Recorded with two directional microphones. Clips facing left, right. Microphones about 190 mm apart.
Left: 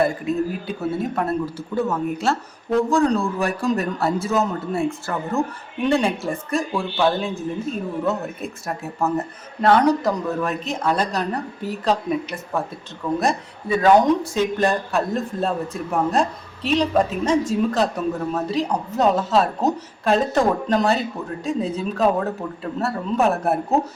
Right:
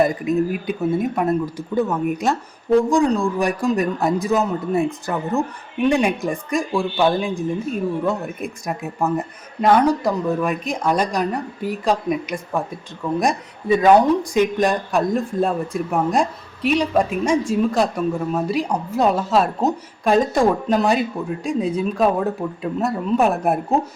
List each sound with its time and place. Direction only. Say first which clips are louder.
0.0 s speech: right 3 dB; 15° right (ahead or behind)